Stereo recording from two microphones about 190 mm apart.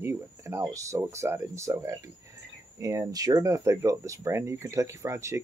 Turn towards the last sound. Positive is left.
turn(degrees=-15)  # may be behind; listen again after turning